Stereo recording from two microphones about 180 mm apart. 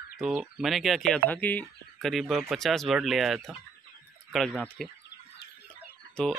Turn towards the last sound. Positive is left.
turn(degrees=5)  # may be behind; listen again after turning